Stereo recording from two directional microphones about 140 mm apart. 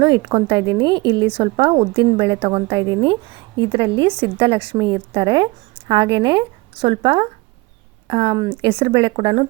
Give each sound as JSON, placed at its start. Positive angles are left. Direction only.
{"t": 0.0, "sound": "a woman's voice", "side_deg": -35}